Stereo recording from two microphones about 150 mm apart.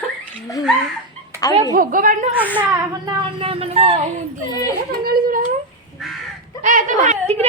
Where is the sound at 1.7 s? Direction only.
65° right (ahead or behind).